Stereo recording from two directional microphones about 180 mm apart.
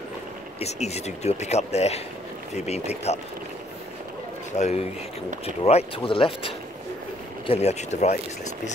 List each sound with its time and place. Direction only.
0.6 s speech: 35° left (ahead or behind)
4.5 s a man's voice: 40° left (ahead or behind)